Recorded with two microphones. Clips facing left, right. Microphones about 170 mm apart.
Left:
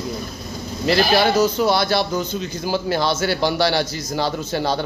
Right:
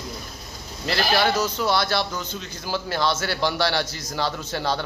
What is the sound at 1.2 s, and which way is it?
A man's voice, 15° left (ahead or behind).